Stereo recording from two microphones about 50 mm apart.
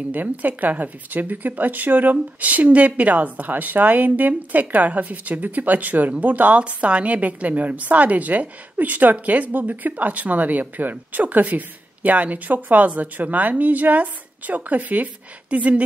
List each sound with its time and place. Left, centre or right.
0.1 s a woman's voice: right